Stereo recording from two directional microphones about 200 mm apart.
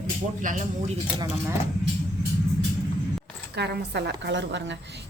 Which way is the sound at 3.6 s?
55° right (ahead or behind).